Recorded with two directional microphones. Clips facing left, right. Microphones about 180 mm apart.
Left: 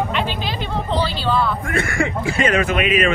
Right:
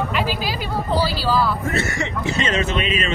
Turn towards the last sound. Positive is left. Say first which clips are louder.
# left 4 dB
turn(degrees=-25)  # may be behind; listen again after turning